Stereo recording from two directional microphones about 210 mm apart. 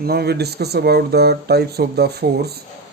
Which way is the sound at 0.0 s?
50° right (ahead or behind).